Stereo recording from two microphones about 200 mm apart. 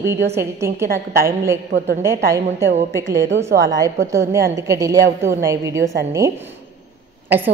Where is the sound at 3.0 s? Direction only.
60° right (ahead or behind).